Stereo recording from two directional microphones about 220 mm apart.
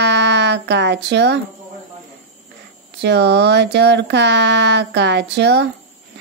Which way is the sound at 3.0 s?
50° right (ahead or behind).